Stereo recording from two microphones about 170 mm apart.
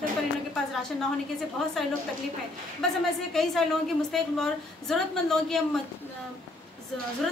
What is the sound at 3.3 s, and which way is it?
A woman's voice, centre (ahead or behind).